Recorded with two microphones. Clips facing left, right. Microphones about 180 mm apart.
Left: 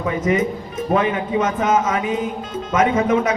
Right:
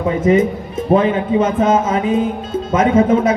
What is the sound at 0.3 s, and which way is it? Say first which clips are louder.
Speech: right 7 dB; 30° right (ahead or behind).